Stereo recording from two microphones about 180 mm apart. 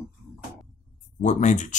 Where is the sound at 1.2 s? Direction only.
40° left (ahead or behind).